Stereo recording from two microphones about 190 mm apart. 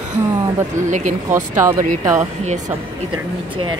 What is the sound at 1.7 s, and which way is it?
Speech, 40° right (ahead or behind).